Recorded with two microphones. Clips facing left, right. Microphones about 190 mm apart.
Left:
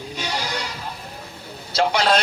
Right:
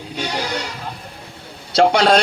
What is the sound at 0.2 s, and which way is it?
Sheep, 60° right (ahead or behind).